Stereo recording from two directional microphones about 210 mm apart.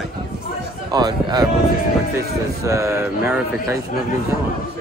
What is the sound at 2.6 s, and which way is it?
Speech, 15° right (ahead or behind).